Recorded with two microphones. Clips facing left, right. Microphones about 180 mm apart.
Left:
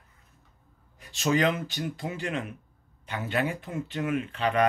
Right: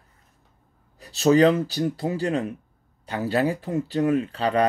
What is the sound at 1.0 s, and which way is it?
Speech, 35° right (ahead or behind).